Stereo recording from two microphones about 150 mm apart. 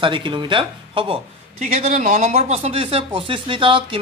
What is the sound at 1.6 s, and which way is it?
Speech, 50° right (ahead or behind).